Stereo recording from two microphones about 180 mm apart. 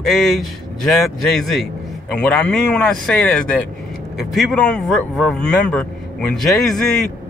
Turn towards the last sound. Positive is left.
turn(degrees=0)  # may be behind; listen again after turning